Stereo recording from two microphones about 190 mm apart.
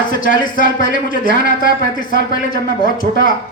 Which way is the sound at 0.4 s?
45° left (ahead or behind).